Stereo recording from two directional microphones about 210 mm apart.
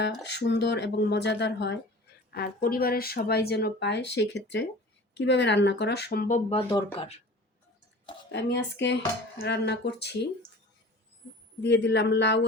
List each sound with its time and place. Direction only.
0.0 s speech: 55° left (ahead or behind)
2.3 s speech: 45° left (ahead or behind); by 7.1 s 25° left (ahead or behind)
8.3 s speech: 55° left (ahead or behind)
11.6 s speech: 55° left (ahead or behind)